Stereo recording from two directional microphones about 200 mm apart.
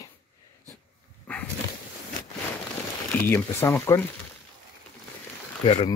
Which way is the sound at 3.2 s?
10° left (ahead or behind).